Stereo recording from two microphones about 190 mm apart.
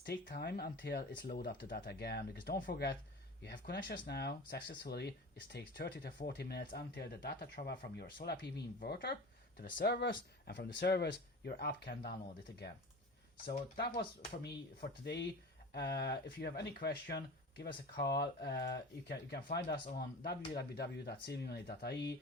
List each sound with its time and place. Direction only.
0.0 s speech: 55° left (ahead or behind)
14.4 s speech: 60° left (ahead or behind)